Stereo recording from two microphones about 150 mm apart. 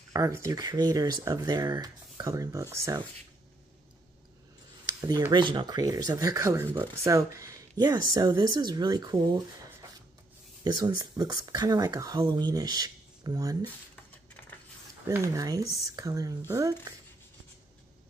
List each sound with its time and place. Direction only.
0.1 s speech: 20° right (ahead or behind)
4.8 s a sound: 25° right (ahead or behind)
5.3 s speech: 30° right (ahead or behind)
15.0 s speech: 20° right (ahead or behind)